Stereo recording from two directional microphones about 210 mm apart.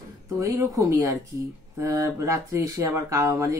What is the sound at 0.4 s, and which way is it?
Speech, 15° right (ahead or behind).